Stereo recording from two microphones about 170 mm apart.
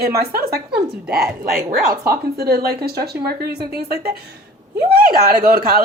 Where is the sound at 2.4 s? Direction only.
65° right (ahead or behind).